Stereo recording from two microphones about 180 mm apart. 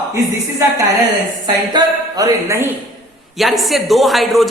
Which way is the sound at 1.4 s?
20° right (ahead or behind).